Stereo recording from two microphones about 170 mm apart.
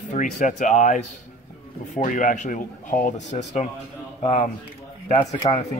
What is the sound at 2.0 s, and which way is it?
Speech, 50° left (ahead or behind).